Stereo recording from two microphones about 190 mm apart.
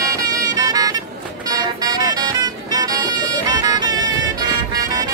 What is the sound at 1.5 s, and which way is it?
Music, 20° right (ahead or behind).